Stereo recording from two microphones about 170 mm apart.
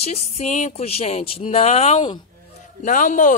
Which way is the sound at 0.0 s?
40° left (ahead or behind).